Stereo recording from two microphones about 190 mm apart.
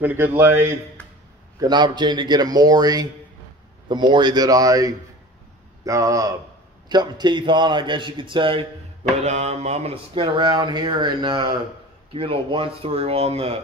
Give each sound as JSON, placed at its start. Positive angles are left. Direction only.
{"t": 0.0, "sound": "a man's voice", "side_deg": -10}
{"t": 1.6, "sound": "a man's voice", "side_deg": -20}